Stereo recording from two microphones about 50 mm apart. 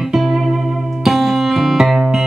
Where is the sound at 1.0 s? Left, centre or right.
Centre.